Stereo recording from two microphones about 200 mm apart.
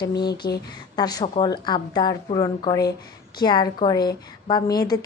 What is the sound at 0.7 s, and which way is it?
A woman's voice, 20° left (ahead or behind).